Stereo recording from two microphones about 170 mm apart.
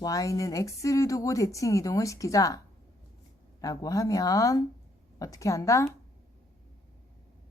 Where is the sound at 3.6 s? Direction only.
20° left (ahead or behind).